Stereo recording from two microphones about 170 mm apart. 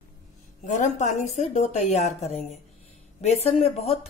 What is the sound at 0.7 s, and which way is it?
A woman's voice, 45° left (ahead or behind).